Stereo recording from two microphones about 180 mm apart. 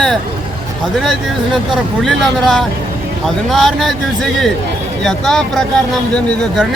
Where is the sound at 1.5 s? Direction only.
Centre (ahead or behind).